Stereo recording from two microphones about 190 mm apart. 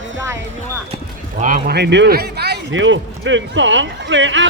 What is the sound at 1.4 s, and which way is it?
A man's voice, 45° right (ahead or behind).